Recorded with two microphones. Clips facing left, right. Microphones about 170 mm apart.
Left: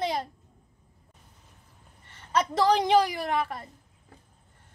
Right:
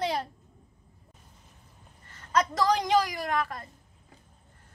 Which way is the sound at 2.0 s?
25° left (ahead or behind).